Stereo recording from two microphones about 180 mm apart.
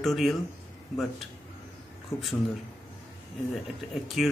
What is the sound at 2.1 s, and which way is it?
Speech, 15° left (ahead or behind).